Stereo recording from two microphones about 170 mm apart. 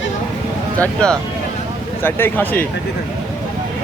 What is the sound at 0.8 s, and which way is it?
Speech, 5° left (ahead or behind).